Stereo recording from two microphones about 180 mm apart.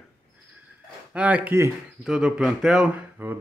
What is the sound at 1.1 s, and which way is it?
Speech, 10° right (ahead or behind).